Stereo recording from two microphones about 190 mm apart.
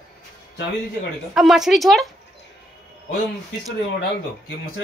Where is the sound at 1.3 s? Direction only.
Centre (ahead or behind).